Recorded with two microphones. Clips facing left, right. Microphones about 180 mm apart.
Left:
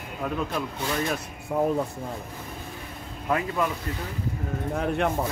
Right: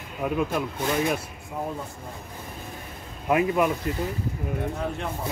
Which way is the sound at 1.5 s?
65° left (ahead or behind).